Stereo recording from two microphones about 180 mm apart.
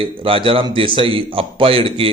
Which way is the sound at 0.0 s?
30° right (ahead or behind).